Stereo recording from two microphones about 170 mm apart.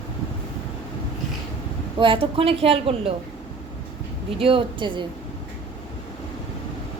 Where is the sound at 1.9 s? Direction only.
30° right (ahead or behind).